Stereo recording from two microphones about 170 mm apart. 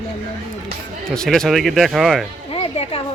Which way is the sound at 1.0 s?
5° left (ahead or behind).